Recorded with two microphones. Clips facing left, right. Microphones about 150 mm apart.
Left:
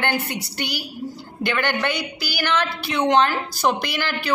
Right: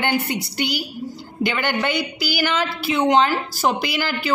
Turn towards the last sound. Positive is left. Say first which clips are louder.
# right 1 dB
turn(degrees=-10)  # may be behind; listen again after turning